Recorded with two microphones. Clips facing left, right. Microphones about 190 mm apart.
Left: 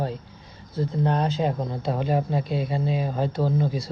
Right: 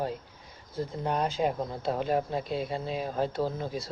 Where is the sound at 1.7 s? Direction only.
Centre (ahead or behind).